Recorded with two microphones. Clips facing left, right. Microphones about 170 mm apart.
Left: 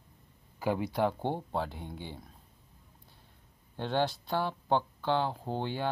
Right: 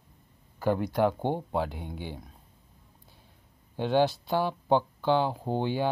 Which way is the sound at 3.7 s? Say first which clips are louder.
Right 6 dB; 10° right (ahead or behind).